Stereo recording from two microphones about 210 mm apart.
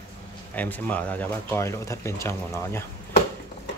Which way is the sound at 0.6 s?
5° left (ahead or behind).